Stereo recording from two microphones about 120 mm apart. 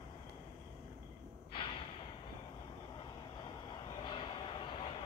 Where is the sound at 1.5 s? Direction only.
45° left (ahead or behind).